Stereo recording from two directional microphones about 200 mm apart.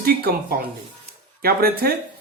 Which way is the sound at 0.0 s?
45° right (ahead or behind).